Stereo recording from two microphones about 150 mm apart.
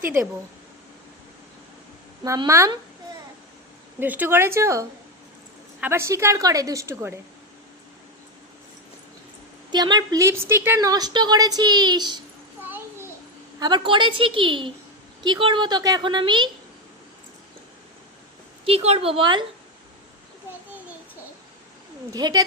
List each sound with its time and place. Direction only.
0.0 s a woman's voice: 15° right (ahead or behind)
2.5 s speech: 20° right (ahead or behind)
4.0 s a woman's voice: 10° right (ahead or behind)
9.7 s speech: 30° right (ahead or behind)
13.6 s a woman's voice: 30° right (ahead or behind)
18.6 s a woman's voice: 45° right (ahead or behind)
22.1 s speech: 25° right (ahead or behind)